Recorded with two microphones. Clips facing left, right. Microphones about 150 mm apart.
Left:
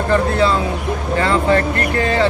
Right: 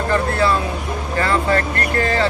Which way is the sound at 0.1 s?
20° left (ahead or behind).